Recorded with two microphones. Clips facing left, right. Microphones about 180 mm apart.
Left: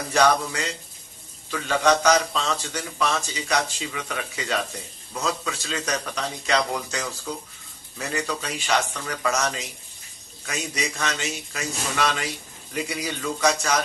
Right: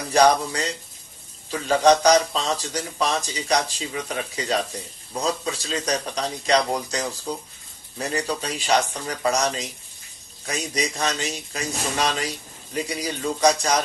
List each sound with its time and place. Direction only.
0.1 s a man's voice: 35° right (ahead or behind)